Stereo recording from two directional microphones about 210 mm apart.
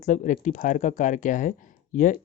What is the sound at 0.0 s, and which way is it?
Speech, 35° left (ahead or behind).